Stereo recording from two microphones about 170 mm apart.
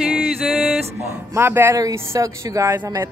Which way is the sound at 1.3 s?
15° right (ahead or behind).